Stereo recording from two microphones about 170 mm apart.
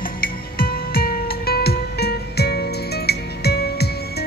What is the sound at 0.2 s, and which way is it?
Music, 60° left (ahead or behind).